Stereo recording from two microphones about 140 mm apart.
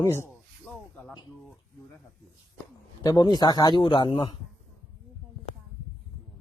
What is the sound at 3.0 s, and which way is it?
A man's voice, 30° left (ahead or behind).